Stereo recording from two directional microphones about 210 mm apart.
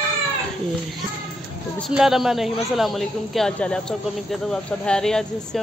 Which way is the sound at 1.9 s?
Centre (ahead or behind).